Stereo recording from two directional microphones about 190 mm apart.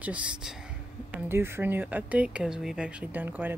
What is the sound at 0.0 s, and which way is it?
Speech, 5° right (ahead or behind).